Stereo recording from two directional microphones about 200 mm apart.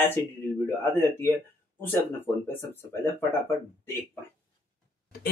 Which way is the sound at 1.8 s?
10° left (ahead or behind).